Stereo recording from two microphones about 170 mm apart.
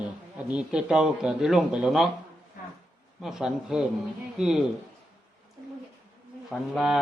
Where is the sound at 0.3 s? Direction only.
5° right (ahead or behind).